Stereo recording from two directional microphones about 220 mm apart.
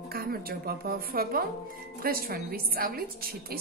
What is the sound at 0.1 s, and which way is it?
A woman's voice, 45° right (ahead or behind).